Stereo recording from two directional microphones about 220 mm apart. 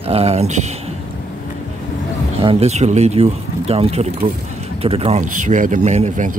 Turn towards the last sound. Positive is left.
turn(degrees=-30)  # may be behind; listen again after turning